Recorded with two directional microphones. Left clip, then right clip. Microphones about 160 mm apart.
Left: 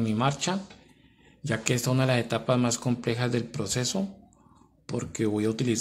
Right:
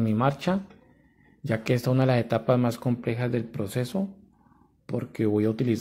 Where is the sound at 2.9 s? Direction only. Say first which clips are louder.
Even; 10° right (ahead or behind).